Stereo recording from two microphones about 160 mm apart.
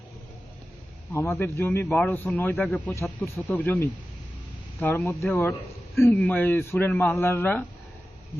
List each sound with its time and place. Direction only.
1.1 s a man's voice: 15° left (ahead or behind)